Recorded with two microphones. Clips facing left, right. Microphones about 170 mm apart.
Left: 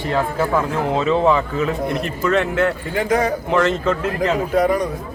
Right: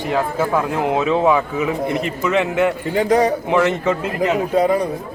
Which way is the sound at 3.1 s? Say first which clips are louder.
Right 3 dB; 35° right (ahead or behind).